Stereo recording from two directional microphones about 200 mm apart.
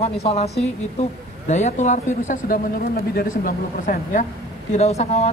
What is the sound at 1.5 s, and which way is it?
Speech, 35° left (ahead or behind).